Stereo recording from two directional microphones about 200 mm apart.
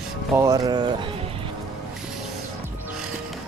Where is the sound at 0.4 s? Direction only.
20° right (ahead or behind).